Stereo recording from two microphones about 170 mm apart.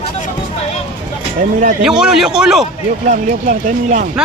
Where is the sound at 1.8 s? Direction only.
5° right (ahead or behind).